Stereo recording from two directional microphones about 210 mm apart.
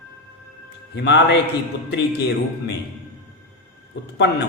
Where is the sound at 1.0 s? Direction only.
55° left (ahead or behind).